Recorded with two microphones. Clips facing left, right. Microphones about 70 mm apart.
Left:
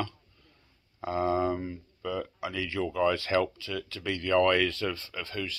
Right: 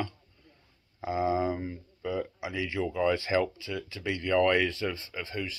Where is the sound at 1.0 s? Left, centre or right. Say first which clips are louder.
Even; centre.